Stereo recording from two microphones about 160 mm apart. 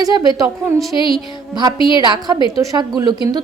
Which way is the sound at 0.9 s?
30° left (ahead or behind).